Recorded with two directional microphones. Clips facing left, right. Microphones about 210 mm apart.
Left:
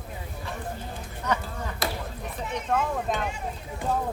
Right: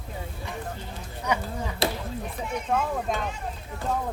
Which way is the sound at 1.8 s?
25° right (ahead or behind).